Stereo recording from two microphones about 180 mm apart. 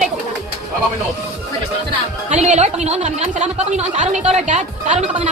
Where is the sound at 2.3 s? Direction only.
40° right (ahead or behind).